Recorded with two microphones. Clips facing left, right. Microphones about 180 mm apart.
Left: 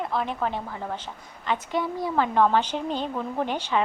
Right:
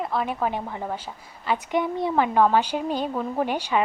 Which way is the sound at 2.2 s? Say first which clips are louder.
Right 1 dB; 10° right (ahead or behind).